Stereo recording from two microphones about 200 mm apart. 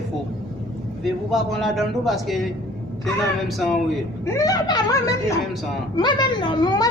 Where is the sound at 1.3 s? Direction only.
Centre (ahead or behind).